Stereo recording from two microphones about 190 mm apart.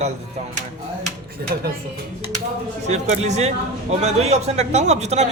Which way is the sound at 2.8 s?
35° right (ahead or behind).